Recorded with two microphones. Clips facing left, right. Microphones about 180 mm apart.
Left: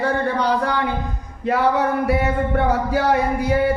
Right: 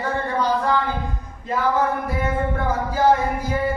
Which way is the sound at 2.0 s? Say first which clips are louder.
Left 4 dB; 70° left (ahead or behind).